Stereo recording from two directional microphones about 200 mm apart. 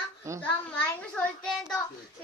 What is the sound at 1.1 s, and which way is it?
Speech, 5° left (ahead or behind).